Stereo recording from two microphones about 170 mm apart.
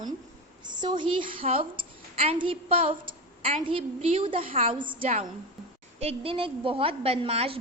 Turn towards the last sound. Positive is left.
turn(degrees=-35)  # may be behind; listen again after turning